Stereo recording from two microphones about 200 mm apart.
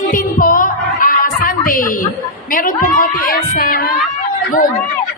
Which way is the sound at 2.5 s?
45° left (ahead or behind).